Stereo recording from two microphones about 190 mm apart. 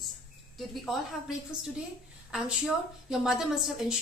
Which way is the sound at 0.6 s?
Centre (ahead or behind).